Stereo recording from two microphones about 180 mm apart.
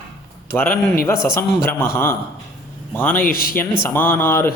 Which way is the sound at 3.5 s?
10° left (ahead or behind).